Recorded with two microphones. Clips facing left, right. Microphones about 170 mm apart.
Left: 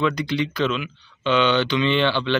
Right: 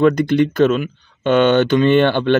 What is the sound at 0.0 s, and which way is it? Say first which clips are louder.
Speech: right 9 dB; 50° right (ahead or behind).